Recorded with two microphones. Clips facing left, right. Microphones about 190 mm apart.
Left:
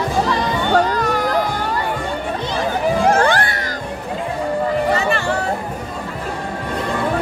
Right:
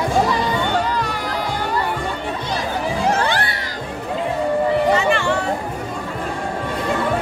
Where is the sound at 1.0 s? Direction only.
45° left (ahead or behind).